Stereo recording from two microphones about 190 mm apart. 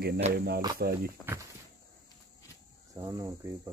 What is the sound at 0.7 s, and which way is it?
Speech, 55° right (ahead or behind).